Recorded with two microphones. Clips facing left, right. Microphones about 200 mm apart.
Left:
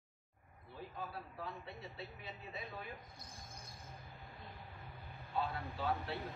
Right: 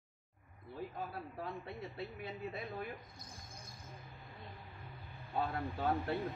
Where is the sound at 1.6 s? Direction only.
50° right (ahead or behind).